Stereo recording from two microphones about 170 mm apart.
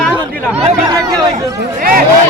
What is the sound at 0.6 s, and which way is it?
Speech, 20° right (ahead or behind).